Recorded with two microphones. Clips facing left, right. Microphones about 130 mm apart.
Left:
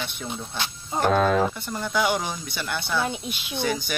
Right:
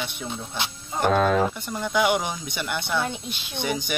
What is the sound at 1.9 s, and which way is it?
Speech, 15° right (ahead or behind).